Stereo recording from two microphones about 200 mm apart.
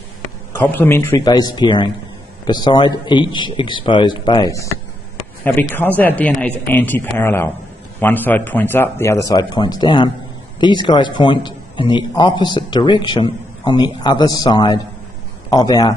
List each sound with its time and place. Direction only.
0.7 s a man's voice: 10° left (ahead or behind)